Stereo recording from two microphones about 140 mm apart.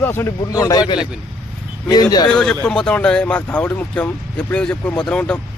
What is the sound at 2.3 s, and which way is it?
Speech, 5° left (ahead or behind).